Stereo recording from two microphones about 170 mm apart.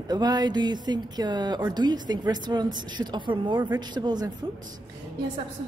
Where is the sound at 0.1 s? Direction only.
25° right (ahead or behind).